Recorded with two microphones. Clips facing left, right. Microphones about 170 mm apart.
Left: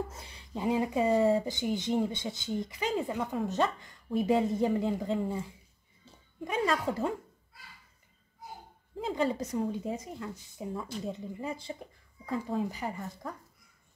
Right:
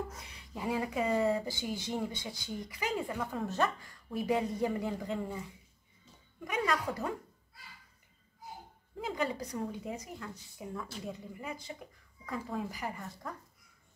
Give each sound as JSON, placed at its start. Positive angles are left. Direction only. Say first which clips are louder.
{"t": 0.1, "sound": "speech", "louder": "left 5 dB", "side_deg": 30}
{"t": 8.9, "sound": "speech", "louder": "left 5 dB", "side_deg": 30}